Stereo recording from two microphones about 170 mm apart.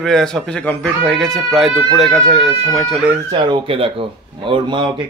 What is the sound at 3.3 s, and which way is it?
Speech, 30° right (ahead or behind).